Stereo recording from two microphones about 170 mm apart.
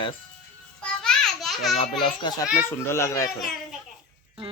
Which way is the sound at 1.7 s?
30° left (ahead or behind).